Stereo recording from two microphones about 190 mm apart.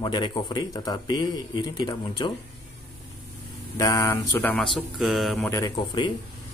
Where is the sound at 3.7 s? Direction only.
15° left (ahead or behind); by 5.5 s centre (ahead or behind).